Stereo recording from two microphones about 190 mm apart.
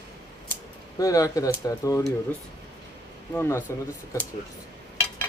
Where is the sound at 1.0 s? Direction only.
15° left (ahead or behind).